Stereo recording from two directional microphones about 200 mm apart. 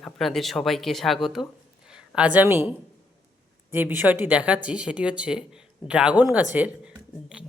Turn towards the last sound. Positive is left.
turn(degrees=-5)  # may be behind; listen again after turning